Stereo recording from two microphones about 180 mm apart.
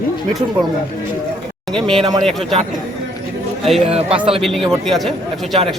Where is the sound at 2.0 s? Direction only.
20° right (ahead or behind).